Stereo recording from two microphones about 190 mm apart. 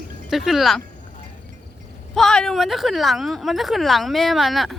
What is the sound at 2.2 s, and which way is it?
Speech, 5° left (ahead or behind).